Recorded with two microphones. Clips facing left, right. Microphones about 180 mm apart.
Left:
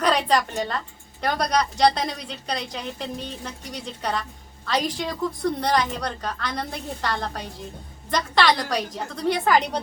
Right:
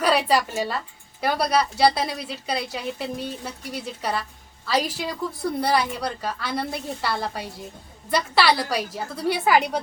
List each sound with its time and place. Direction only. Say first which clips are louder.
0.0 s a woman's voice: right 1 dB; 5° right (ahead or behind)